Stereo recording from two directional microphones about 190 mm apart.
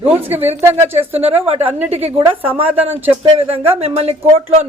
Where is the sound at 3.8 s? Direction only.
30° right (ahead or behind).